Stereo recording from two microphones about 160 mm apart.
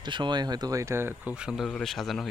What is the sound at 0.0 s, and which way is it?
Speech, 30° right (ahead or behind).